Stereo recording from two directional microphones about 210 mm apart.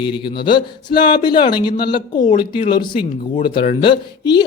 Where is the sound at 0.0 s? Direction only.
20° left (ahead or behind).